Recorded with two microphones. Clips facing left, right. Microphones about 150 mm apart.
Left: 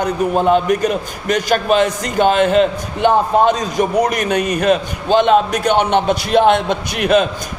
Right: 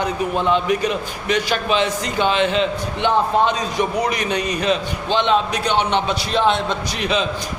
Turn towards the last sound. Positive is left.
turn(degrees=55)  # may be behind; listen again after turning